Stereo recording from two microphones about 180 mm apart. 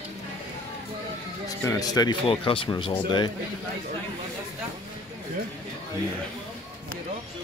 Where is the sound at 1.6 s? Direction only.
20° left (ahead or behind).